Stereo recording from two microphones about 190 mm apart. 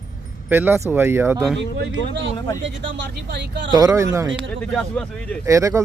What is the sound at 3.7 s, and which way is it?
Speech, 20° right (ahead or behind).